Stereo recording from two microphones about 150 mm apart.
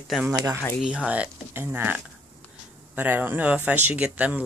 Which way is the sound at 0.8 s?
10° right (ahead or behind).